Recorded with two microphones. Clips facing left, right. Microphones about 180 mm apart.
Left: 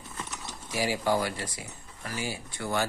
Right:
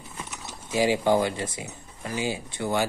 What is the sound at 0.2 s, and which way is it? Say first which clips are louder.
Speech: right 1 dB; 10° right (ahead or behind).